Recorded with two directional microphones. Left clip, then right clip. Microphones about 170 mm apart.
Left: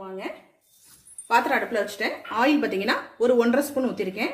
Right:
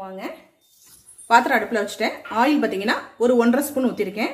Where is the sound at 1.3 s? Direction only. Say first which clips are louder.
Right 5 dB; 30° right (ahead or behind).